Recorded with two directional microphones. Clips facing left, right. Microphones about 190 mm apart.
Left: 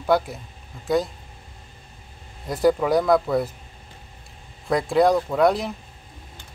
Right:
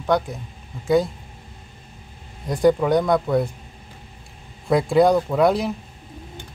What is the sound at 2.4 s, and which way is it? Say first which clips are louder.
Speech: right 2 dB; centre (ahead or behind).